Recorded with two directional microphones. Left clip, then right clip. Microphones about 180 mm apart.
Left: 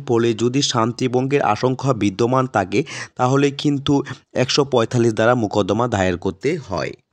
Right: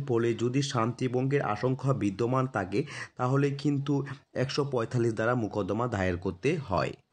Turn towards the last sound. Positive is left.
turn(degrees=30)  # may be behind; listen again after turning